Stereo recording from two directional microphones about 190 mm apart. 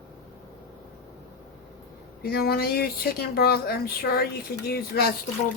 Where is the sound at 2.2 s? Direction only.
55° left (ahead or behind).